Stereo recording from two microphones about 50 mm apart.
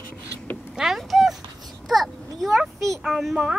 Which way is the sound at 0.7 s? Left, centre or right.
Centre.